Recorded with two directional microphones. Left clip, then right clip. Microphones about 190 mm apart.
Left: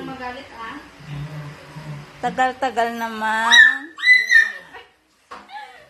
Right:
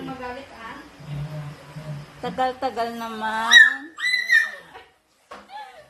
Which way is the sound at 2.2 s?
15° left (ahead or behind).